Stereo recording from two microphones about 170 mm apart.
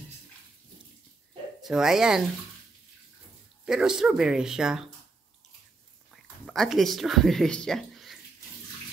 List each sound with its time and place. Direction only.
1.6 s speech: 5° right (ahead or behind)
3.6 s speech: 5° right (ahead or behind)
6.4 s speech: centre (ahead or behind)